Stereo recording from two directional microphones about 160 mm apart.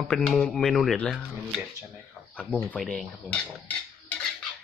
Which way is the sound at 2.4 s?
10° left (ahead or behind).